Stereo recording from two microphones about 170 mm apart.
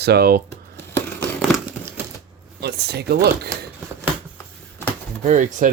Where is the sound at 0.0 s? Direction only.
70° right (ahead or behind).